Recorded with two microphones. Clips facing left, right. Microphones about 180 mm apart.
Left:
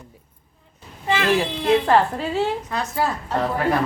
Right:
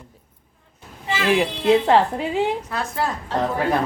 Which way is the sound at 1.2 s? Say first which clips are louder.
Right 3 dB; 15° right (ahead or behind).